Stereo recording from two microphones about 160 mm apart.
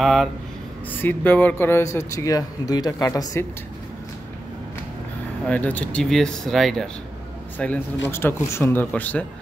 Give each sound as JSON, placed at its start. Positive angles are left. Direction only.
{"t": 0.0, "sound": "speech", "side_deg": 0}
{"t": 0.9, "sound": "speech", "side_deg": 10}
{"t": 5.5, "sound": "speech", "side_deg": 10}